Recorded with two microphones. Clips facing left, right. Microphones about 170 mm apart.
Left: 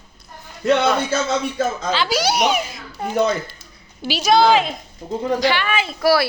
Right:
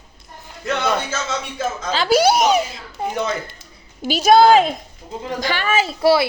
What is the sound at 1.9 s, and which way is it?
Speech, 45° right (ahead or behind).